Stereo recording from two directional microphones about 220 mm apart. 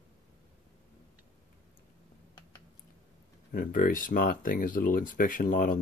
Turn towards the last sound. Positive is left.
turn(degrees=40)  # may be behind; listen again after turning